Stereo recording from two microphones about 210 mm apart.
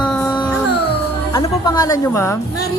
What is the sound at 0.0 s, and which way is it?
Music, 5° left (ahead or behind).